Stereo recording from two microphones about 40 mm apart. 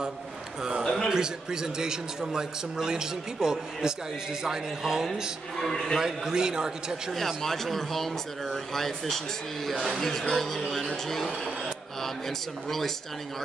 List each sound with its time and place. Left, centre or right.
1.0 s a man's voice: centre
5.6 s speech: centre
5.9 s a man's voice: centre
7.4 s speech: centre